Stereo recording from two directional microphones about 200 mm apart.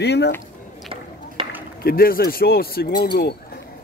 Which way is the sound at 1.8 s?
45° left (ahead or behind).